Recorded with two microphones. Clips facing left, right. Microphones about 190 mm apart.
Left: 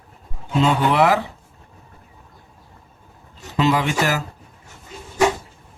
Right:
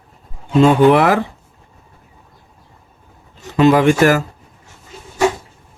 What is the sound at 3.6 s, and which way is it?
Speech, 50° right (ahead or behind).